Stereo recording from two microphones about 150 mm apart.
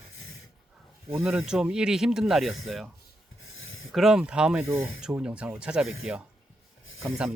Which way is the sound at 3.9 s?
5° right (ahead or behind).